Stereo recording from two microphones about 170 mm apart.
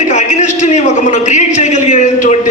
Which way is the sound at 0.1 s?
45° left (ahead or behind).